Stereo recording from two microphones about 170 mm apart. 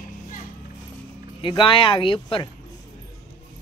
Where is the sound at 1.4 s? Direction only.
30° left (ahead or behind).